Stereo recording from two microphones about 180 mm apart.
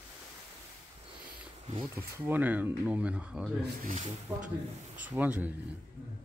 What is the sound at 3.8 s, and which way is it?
Speech, 45° right (ahead or behind).